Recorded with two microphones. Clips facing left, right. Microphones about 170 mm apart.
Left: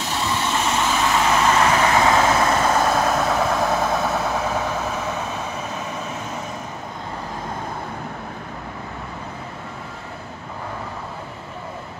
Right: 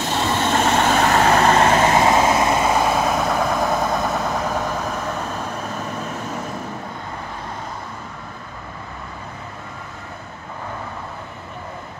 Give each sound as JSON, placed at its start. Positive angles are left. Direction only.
{"t": 0.1, "sound": "vehicle", "side_deg": -50}
{"t": 1.9, "sound": "vehicle", "side_deg": -20}
{"t": 2.6, "sound": "vehicle", "side_deg": -5}